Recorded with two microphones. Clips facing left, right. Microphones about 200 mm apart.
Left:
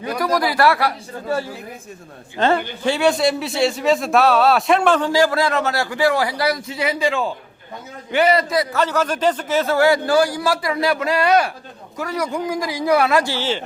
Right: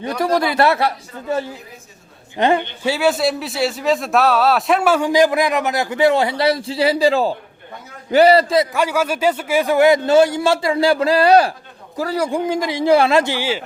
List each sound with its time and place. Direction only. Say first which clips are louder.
0.2 s a man's voice: right 2 dB; 25° right (ahead or behind)
2.9 s a man's voice: even; 5° right (ahead or behind); by 8.6 s 30° right (ahead or behind)
8.7 s a man's voice: right 1 dB; 10° right (ahead or behind)